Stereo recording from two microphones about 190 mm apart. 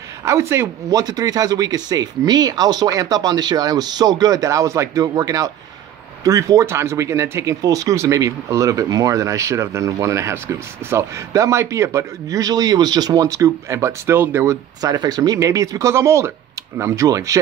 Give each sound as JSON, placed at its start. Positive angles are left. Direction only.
{"t": 0.2, "sound": "speech", "side_deg": -15}